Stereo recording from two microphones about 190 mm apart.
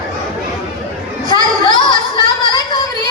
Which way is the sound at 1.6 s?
25° left (ahead or behind).